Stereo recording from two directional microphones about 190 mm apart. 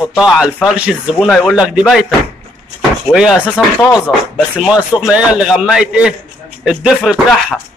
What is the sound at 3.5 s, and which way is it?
Speech, 20° left (ahead or behind).